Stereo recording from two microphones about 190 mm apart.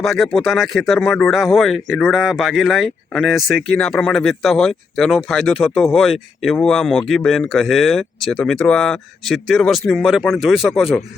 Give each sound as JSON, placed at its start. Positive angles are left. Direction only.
{"t": 0.0, "sound": "speech", "side_deg": 0}